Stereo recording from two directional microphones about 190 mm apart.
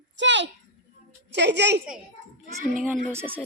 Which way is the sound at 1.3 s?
65° right (ahead or behind).